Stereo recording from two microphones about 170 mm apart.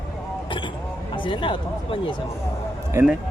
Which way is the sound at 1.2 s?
30° left (ahead or behind).